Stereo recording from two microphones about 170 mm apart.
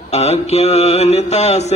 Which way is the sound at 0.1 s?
40° left (ahead or behind).